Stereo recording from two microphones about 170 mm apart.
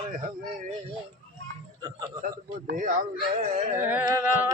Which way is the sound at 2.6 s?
50° right (ahead or behind).